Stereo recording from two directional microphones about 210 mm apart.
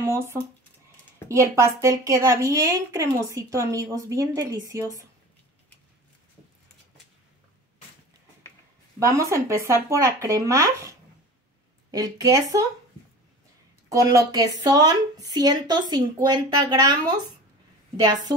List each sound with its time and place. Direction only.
0.0 s a woman's voice: 10° right (ahead or behind)
9.0 s a woman's voice: 15° right (ahead or behind)
13.8 s a woman's voice: 15° right (ahead or behind)